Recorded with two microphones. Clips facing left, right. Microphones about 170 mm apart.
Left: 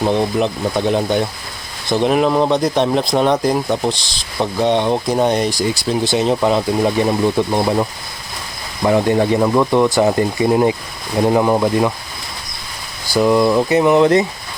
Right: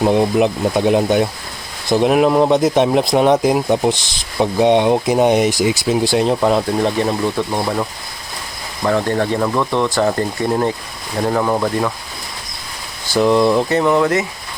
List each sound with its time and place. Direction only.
0.0 s speech: 10° right (ahead or behind)
6.8 s speech: 15° left (ahead or behind)
13.1 s speech: 5° left (ahead or behind)
13.7 s speech: 15° left (ahead or behind)